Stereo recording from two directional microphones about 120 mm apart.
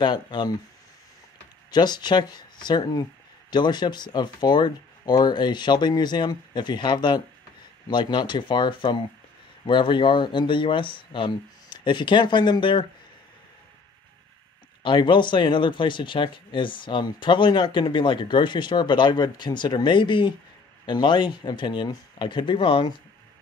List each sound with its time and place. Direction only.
0.0 s speech: 40° left (ahead or behind)
1.7 s speech: 35° left (ahead or behind)
14.8 s speech: 45° left (ahead or behind)